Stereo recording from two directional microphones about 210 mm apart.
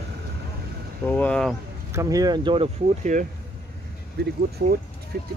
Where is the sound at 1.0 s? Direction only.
5° left (ahead or behind).